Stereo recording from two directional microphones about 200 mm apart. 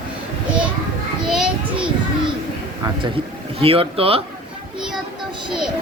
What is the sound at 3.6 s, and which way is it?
Speech, 30° right (ahead or behind).